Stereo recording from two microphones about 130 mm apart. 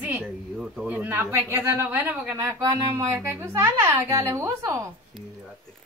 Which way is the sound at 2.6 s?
25° right (ahead or behind).